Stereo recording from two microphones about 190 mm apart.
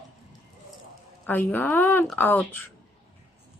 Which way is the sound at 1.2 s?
10° left (ahead or behind).